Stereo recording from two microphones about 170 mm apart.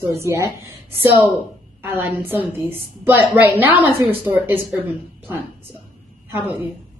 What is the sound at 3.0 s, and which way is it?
A woman's voice, 10° right (ahead or behind).